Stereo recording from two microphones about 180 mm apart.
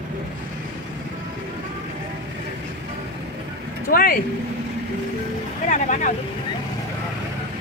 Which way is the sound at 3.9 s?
50° left (ahead or behind).